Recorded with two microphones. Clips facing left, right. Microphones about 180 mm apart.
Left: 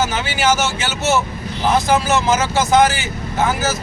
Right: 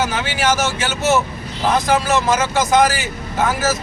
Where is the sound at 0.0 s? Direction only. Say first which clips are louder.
Even; 5° left (ahead or behind).